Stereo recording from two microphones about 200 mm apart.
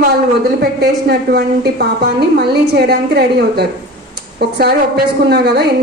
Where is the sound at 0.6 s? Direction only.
55° right (ahead or behind).